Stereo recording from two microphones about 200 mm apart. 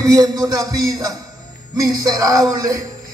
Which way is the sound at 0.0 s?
15° right (ahead or behind).